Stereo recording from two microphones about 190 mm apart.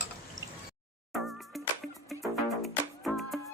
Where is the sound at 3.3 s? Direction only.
Centre (ahead or behind).